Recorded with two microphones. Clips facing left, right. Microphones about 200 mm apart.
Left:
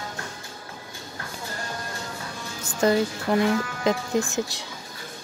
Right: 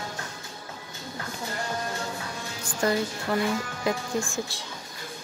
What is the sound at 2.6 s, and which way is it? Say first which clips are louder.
Speech: left 5 dB; 25° left (ahead or behind).